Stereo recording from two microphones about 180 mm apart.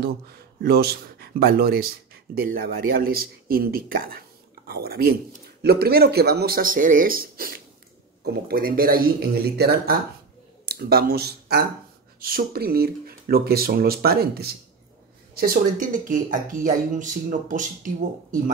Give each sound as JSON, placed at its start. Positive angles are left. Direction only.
{"t": 0.0, "sound": "speech", "side_deg": -60}